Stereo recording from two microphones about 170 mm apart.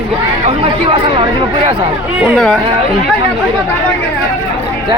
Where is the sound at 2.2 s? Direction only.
5° right (ahead or behind).